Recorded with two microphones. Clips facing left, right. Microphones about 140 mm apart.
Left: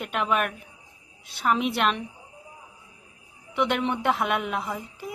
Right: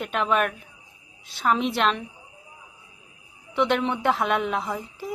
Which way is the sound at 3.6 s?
5° left (ahead or behind).